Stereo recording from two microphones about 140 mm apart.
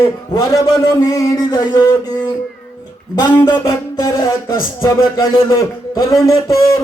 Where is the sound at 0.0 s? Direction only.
25° left (ahead or behind).